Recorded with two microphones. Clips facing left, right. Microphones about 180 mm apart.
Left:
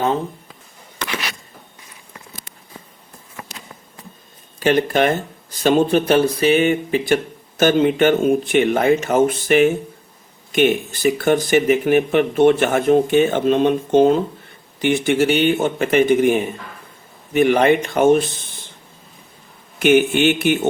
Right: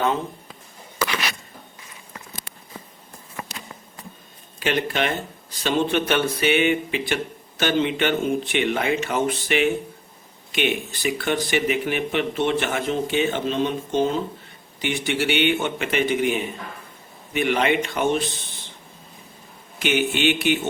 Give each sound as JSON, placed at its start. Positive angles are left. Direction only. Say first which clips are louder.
{"t": 4.6, "sound": "speech", "louder": "left 7 dB", "side_deg": 45}
{"t": 19.8, "sound": "speech", "louder": "left 7 dB", "side_deg": 50}